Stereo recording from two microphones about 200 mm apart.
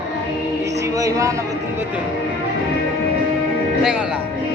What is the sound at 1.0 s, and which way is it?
Music, 15° right (ahead or behind).